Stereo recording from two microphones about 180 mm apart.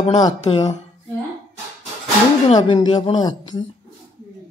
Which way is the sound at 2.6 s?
25° left (ahead or behind).